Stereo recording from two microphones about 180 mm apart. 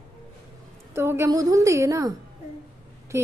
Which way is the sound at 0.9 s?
15° right (ahead or behind).